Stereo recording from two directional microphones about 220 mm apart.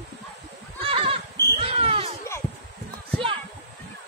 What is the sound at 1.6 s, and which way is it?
Basketball bounce, 25° right (ahead or behind).